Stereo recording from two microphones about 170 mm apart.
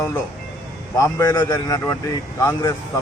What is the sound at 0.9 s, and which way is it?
Speech, 20° left (ahead or behind).